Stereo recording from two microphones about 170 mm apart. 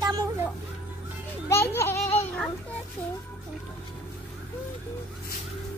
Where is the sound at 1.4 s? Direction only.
15° left (ahead or behind).